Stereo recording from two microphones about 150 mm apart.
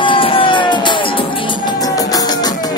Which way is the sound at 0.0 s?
35° left (ahead or behind).